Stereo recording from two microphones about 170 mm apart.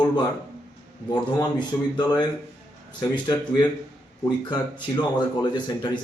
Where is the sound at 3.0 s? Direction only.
25° left (ahead or behind).